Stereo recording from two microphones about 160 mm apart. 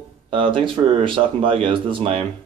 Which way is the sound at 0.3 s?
35° right (ahead or behind).